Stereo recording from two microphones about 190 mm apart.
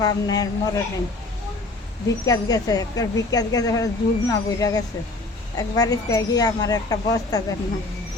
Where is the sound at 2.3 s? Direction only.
20° left (ahead or behind).